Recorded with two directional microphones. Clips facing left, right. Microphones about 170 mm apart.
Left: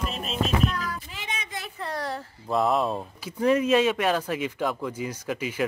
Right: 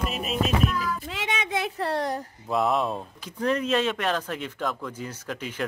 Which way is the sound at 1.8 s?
30° right (ahead or behind).